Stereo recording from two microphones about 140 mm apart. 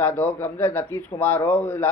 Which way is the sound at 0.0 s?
15° left (ahead or behind).